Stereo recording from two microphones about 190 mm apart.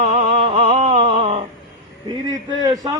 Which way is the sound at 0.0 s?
35° right (ahead or behind).